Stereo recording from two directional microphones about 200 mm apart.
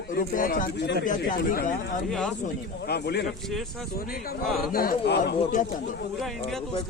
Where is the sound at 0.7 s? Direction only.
60° left (ahead or behind).